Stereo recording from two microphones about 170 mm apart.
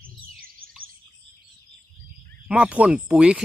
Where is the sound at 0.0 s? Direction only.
60° right (ahead or behind).